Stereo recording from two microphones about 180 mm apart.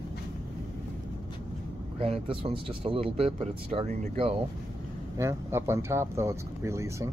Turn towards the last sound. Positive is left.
turn(degrees=-15)  # may be behind; listen again after turning